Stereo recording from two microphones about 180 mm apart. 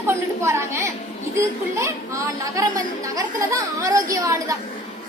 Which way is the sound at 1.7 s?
15° right (ahead or behind).